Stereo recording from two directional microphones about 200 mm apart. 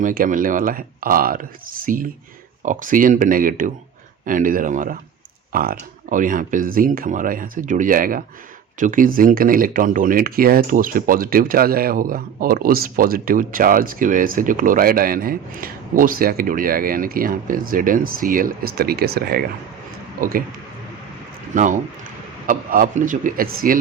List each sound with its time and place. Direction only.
0.0 s speech: 45° right (ahead or behind)
21.5 s speech: 40° right (ahead or behind)